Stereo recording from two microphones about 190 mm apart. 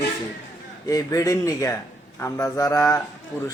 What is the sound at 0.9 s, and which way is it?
A man's voice, 20° left (ahead or behind).